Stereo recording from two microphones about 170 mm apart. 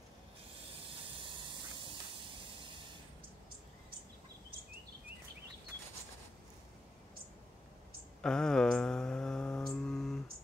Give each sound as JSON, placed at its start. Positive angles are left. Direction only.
{"t": 0.8, "sound": "hiss", "side_deg": -30}
{"t": 8.2, "sound": "mantra", "side_deg": 5}